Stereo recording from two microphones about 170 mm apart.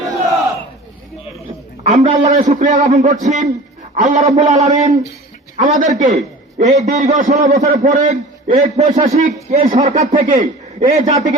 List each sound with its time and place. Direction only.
1.9 s a man's voice: 45° right (ahead or behind)